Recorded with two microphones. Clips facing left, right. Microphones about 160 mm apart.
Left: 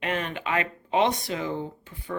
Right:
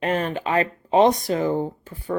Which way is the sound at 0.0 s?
40° right (ahead or behind).